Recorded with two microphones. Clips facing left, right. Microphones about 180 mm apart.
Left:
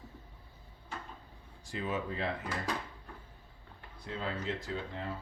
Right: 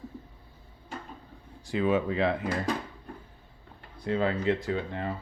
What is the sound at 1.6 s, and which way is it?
Speech, 75° right (ahead or behind).